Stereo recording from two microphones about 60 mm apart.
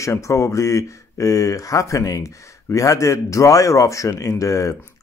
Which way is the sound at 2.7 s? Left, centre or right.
Left.